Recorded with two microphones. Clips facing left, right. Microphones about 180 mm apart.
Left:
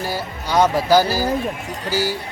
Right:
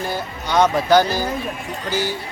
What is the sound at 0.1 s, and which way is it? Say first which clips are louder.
Speech: left 1 dB; 5° left (ahead or behind).